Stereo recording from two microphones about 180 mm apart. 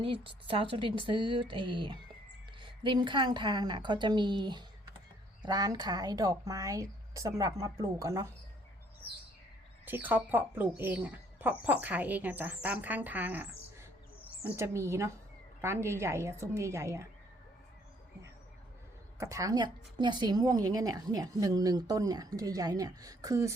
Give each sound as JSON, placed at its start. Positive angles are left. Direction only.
{"t": 0.0, "sound": "a woman's voice", "side_deg": -30}
{"t": 9.8, "sound": "speech", "side_deg": -10}
{"t": 14.5, "sound": "speech", "side_deg": -15}
{"t": 19.2, "sound": "a woman's voice", "side_deg": -20}